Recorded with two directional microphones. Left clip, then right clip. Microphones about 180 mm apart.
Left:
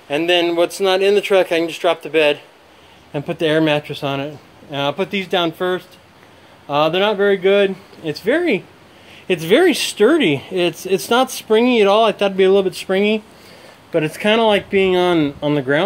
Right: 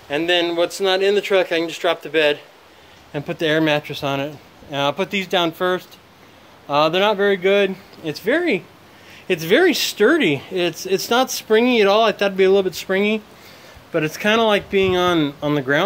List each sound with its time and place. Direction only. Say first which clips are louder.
0.1 s speech: left 3 dB; 25° left (ahead or behind); by 15.8 s 5° left (ahead or behind)